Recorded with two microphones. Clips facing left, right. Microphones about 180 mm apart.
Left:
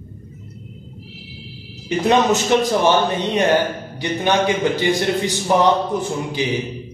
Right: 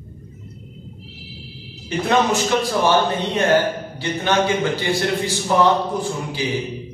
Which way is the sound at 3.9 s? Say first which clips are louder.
Left 2 dB; 15° left (ahead or behind).